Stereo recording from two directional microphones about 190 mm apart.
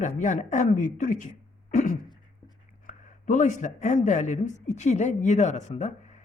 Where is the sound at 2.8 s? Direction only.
40° left (ahead or behind).